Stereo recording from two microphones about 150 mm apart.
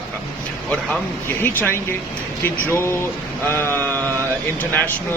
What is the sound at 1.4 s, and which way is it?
Speech, 15° left (ahead or behind).